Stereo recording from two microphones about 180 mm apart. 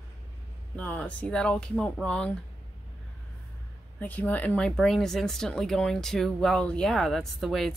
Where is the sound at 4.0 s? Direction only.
10° left (ahead or behind).